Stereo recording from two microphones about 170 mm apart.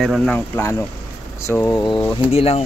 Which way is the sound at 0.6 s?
15° left (ahead or behind).